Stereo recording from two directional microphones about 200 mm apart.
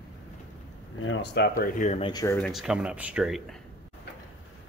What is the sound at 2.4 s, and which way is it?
Speech, centre (ahead or behind).